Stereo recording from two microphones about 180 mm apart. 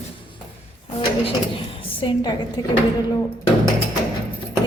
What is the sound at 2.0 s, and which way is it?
Speech, 25° left (ahead or behind).